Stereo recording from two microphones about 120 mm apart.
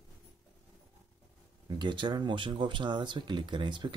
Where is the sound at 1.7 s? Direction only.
40° right (ahead or behind).